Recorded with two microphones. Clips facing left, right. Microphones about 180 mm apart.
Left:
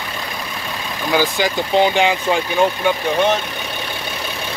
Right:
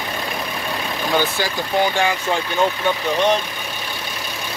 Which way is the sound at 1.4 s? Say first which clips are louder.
Left 4 dB; 20° left (ahead or behind).